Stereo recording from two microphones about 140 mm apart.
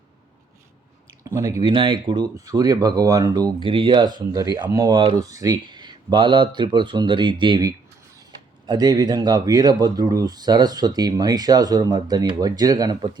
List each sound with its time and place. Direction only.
1.2 s speech: 25° right (ahead or behind)
1.7 s speech: 35° right (ahead or behind)